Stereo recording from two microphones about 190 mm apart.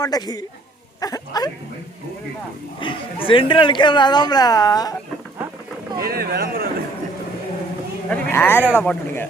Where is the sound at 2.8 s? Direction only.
25° left (ahead or behind).